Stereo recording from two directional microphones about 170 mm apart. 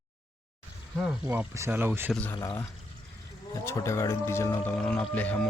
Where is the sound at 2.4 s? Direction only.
20° left (ahead or behind).